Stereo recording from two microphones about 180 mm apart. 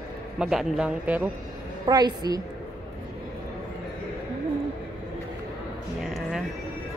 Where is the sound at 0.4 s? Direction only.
Centre (ahead or behind).